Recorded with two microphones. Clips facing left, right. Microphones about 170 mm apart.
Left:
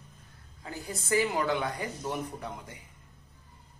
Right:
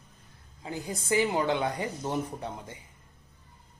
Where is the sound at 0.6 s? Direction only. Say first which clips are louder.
Right 3 dB; 20° right (ahead or behind).